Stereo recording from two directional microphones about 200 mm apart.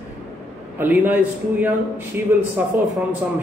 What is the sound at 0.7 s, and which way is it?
A man's voice, 10° right (ahead or behind).